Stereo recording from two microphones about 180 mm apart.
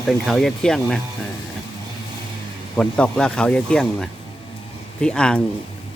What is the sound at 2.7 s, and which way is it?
A man's voice, 5° left (ahead or behind).